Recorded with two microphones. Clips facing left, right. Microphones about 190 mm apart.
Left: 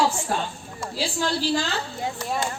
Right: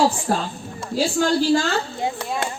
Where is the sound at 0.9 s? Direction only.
45° right (ahead or behind).